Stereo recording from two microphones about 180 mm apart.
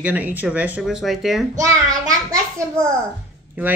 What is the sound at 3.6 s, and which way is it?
Speech, 10° right (ahead or behind).